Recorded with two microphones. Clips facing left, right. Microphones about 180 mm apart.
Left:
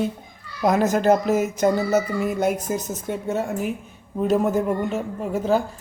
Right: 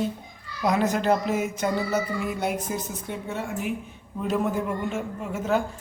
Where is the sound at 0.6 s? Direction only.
45° left (ahead or behind).